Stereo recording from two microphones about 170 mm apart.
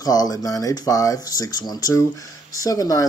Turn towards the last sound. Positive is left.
turn(degrees=20)  # may be behind; listen again after turning